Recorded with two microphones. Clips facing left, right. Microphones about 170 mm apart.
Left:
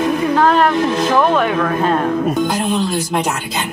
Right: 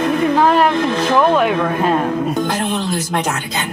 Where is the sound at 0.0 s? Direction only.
Centre (ahead or behind).